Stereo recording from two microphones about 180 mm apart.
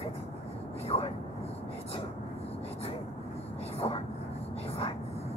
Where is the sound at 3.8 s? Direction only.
25° left (ahead or behind).